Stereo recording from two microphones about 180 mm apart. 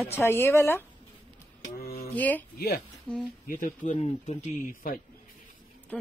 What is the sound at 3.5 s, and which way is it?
Speech, 50° left (ahead or behind).